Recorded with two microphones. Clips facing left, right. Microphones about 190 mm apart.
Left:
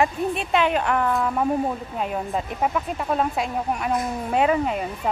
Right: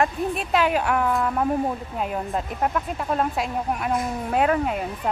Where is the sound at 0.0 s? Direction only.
Centre (ahead or behind).